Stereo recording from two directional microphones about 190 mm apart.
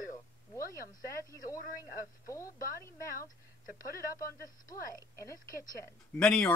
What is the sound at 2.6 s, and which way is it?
Speech, 45° left (ahead or behind).